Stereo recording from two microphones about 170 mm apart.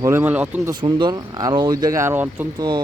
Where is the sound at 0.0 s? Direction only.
15° right (ahead or behind).